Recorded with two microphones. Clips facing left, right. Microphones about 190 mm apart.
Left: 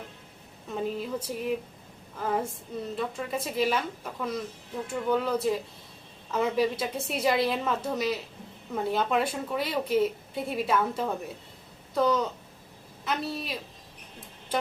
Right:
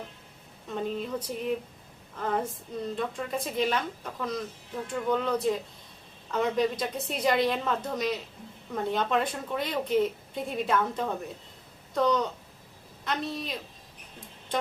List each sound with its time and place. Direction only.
0.7 s a woman's voice: 5° left (ahead or behind)